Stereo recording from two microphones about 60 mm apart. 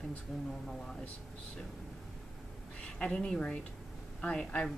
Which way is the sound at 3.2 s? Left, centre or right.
Centre.